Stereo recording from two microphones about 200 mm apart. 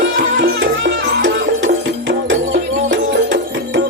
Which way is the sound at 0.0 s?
70° right (ahead or behind).